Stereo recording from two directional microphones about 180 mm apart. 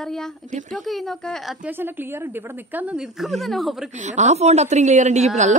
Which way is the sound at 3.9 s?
40° right (ahead or behind).